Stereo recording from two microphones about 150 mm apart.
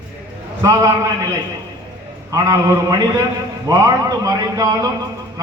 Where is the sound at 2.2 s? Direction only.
20° right (ahead or behind).